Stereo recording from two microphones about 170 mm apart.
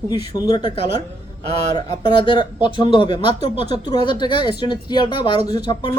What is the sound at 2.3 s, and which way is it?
Speech, 30° left (ahead or behind).